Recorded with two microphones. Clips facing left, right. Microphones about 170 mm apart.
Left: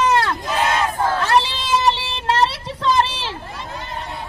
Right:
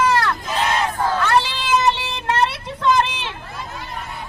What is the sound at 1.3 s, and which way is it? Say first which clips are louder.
Child singing: even; 25° left (ahead or behind).